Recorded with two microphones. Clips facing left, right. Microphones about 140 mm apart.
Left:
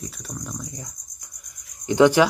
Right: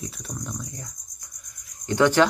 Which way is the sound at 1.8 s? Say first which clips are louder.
Left 4 dB; 15° left (ahead or behind).